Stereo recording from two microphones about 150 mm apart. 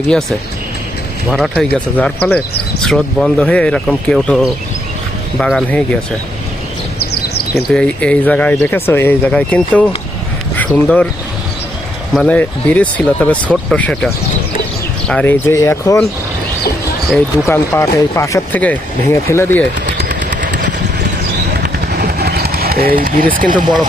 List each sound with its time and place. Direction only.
0.1 s speech: centre (ahead or behind)
7.5 s speech: 5° left (ahead or behind)
10.8 s speech: 10° left (ahead or behind)
12.1 s speech: 5° left (ahead or behind)
17.4 s speech: 20° left (ahead or behind)
20.0 s vehicle: 60° right (ahead or behind)
21.6 s a sound: 90° right; by 23.6 s 65° right (ahead or behind)